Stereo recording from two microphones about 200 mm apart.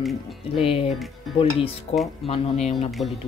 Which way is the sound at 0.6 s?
30° left (ahead or behind).